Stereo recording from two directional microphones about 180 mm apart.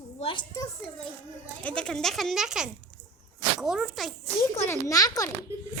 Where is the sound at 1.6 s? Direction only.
5° left (ahead or behind).